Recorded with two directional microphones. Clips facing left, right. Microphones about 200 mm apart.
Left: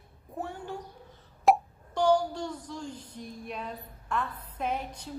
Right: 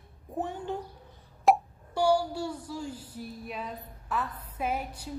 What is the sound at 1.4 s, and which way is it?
Speech, 5° right (ahead or behind).